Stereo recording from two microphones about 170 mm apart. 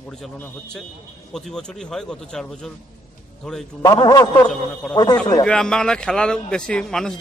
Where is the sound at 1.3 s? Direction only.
5° left (ahead or behind).